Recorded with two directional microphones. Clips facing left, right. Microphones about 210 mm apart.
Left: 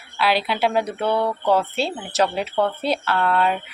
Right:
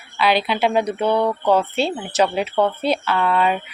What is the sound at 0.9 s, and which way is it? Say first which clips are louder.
Mantra: right 3 dB; 20° right (ahead or behind).